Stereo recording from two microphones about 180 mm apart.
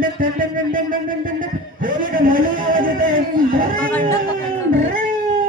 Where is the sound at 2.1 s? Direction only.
50° right (ahead or behind).